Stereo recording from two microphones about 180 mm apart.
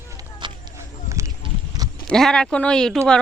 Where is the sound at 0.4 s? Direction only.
25° right (ahead or behind).